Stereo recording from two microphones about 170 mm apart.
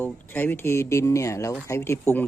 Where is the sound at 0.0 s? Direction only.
10° left (ahead or behind).